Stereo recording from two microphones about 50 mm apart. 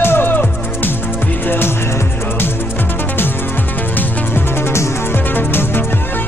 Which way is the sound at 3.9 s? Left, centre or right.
Left.